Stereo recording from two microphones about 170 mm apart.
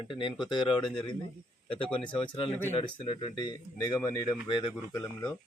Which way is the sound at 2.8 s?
30° left (ahead or behind).